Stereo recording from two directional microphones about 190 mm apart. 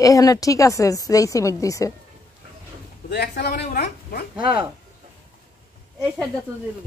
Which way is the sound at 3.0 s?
55° left (ahead or behind).